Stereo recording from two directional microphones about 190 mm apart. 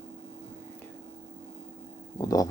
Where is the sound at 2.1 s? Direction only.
20° left (ahead or behind).